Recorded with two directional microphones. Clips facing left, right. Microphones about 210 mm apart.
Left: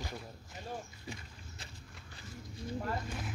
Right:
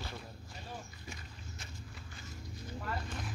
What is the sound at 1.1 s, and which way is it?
Speech, 30° left (ahead or behind).